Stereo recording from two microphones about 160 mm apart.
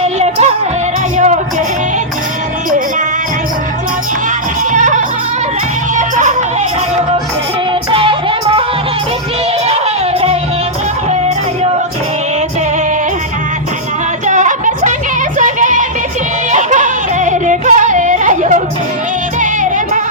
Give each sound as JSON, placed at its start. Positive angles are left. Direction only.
{"t": 0.2, "sound": "music", "side_deg": -45}
{"t": 4.7, "sound": "music", "side_deg": -50}
{"t": 7.9, "sound": "music", "side_deg": -30}
{"t": 9.6, "sound": "music", "side_deg": -40}
{"t": 14.3, "sound": "music", "side_deg": -50}